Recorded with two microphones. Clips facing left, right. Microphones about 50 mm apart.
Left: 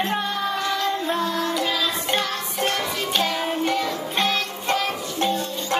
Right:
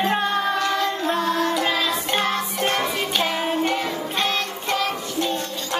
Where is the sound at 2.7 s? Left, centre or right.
Right.